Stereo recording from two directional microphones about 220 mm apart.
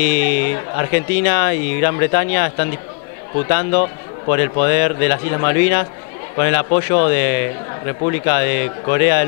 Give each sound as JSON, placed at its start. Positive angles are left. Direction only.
{"t": 0.0, "sound": "speech", "side_deg": 10}